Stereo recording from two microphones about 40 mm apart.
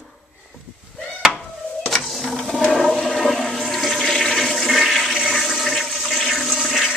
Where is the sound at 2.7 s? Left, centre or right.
Centre.